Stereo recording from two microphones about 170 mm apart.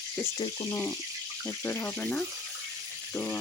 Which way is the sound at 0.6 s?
15° left (ahead or behind).